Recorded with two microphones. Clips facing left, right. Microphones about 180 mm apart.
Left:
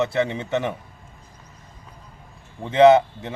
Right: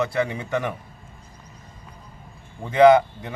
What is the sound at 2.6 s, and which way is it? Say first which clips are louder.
Speech: left 1 dB; 25° left (ahead or behind).